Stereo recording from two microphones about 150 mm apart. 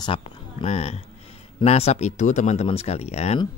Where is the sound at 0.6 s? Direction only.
45° left (ahead or behind).